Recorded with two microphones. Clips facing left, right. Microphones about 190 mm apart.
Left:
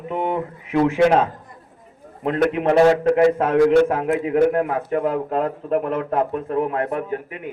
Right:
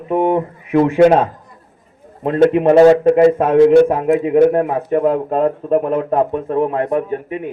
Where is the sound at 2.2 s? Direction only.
20° right (ahead or behind).